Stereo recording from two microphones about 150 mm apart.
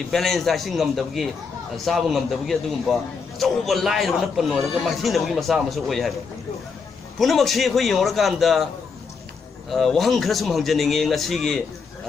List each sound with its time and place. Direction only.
0.1 s a man's voice: centre (ahead or behind)
7.2 s a man's voice: centre (ahead or behind)
9.7 s a man's voice: centre (ahead or behind)